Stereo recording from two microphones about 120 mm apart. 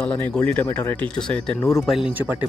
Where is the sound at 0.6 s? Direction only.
25° left (ahead or behind).